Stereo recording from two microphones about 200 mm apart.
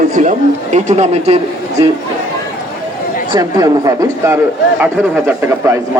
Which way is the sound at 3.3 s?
20° right (ahead or behind).